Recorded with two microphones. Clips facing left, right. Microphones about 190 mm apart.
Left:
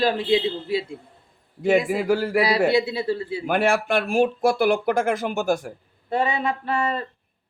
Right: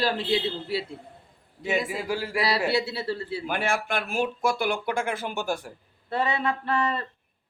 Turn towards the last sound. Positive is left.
turn(degrees=10)  # may be behind; listen again after turning